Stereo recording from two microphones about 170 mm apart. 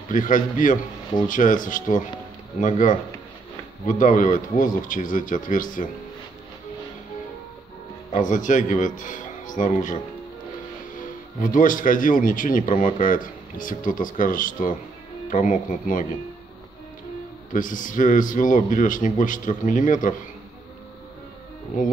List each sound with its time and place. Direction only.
0.1 s speech: 50° left (ahead or behind)
8.1 s speech: 50° left (ahead or behind)
11.4 s speech: 50° left (ahead or behind)
17.5 s speech: 50° left (ahead or behind)